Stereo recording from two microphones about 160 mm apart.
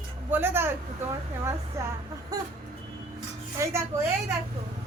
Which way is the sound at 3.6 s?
20° right (ahead or behind).